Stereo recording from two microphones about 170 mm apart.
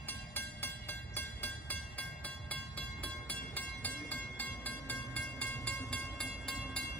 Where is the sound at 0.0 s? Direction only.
10° left (ahead or behind).